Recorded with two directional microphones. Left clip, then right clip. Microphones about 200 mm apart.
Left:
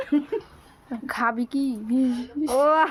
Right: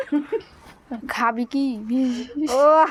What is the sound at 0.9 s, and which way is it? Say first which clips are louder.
A woman's voice: right 3 dB; 5° left (ahead or behind).